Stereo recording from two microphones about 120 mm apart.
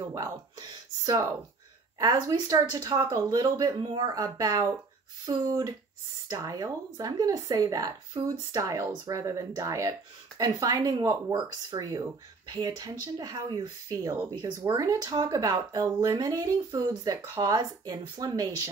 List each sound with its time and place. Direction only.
0.1 s speech: 30° right (ahead or behind)
8.5 s speech: 25° right (ahead or behind)